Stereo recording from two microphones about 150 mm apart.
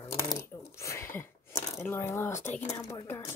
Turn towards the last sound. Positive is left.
turn(degrees=15)  # may be behind; listen again after turning